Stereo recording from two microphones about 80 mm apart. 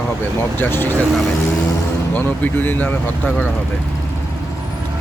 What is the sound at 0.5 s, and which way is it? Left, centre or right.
Speech, left.